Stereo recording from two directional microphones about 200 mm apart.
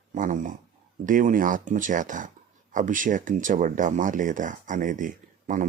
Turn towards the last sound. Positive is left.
turn(degrees=-40)  # may be behind; listen again after turning